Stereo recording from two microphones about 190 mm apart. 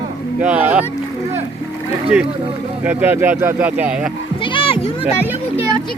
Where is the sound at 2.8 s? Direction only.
10° right (ahead or behind).